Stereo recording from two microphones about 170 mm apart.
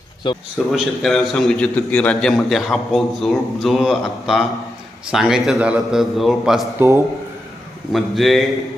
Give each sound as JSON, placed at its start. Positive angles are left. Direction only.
{"t": 0.7, "sound": "a man's voice", "side_deg": 0}
{"t": 6.7, "sound": "a man's voice", "side_deg": -15}
{"t": 7.9, "sound": "a man's voice", "side_deg": 0}